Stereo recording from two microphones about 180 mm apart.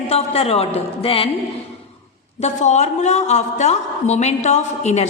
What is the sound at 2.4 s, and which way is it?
A woman's voice, 40° left (ahead or behind).